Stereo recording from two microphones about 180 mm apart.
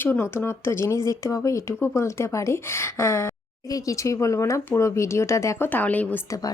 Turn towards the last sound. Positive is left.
turn(degrees=20)  # may be behind; listen again after turning